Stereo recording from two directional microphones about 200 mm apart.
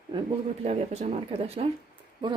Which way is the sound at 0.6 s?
30° right (ahead or behind).